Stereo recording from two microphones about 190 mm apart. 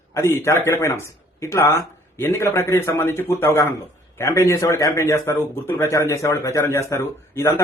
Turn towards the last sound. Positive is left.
turn(degrees=15)  # may be behind; listen again after turning